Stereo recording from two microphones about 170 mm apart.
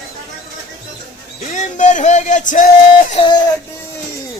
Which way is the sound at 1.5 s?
45° left (ahead or behind).